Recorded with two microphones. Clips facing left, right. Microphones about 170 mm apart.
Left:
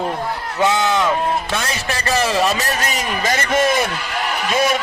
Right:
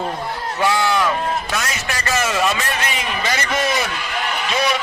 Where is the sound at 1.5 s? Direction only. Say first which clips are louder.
Left 2 dB; 30° left (ahead or behind).